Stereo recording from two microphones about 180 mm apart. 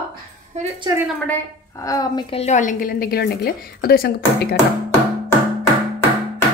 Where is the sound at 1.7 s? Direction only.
20° left (ahead or behind); by 4.6 s 60° left (ahead or behind).